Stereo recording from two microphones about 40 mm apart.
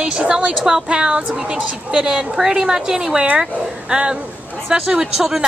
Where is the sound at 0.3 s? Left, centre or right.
Right.